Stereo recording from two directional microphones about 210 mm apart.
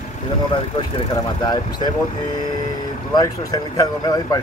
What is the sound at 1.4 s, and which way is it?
Speech, 20° left (ahead or behind).